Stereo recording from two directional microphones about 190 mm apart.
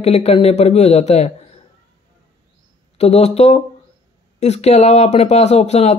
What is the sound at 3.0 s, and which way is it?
Speech, 35° left (ahead or behind).